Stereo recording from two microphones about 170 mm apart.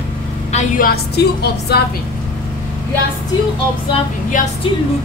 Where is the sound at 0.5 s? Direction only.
40° left (ahead or behind).